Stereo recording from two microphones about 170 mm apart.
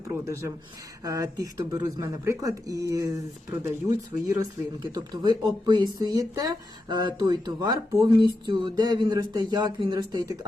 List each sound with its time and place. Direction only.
0.1 s speech: 15° right (ahead or behind)